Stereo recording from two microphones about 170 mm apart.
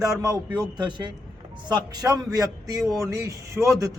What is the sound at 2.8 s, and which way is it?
Speech, centre (ahead or behind).